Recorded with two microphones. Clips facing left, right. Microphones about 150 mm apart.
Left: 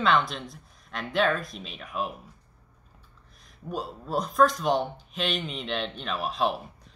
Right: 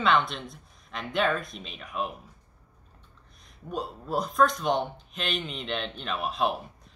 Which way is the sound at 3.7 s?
Centre (ahead or behind).